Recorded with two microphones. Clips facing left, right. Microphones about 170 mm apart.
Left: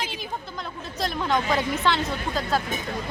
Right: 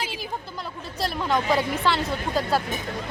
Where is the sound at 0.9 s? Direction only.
5° right (ahead or behind).